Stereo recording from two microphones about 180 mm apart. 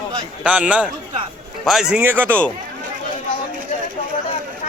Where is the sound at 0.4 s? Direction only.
5° right (ahead or behind).